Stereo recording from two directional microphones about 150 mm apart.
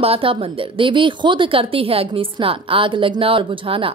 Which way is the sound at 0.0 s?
40° right (ahead or behind).